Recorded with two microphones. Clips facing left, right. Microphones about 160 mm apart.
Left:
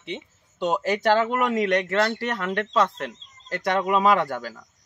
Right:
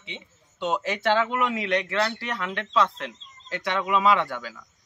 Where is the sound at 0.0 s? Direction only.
45° left (ahead or behind).